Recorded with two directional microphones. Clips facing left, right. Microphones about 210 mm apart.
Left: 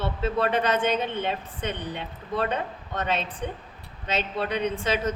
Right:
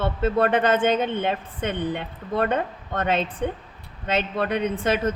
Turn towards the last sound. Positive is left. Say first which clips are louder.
# right 3 dB
turn(degrees=-50)  # may be behind; listen again after turning